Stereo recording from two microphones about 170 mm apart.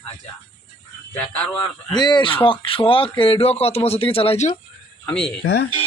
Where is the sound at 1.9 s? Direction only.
25° left (ahead or behind).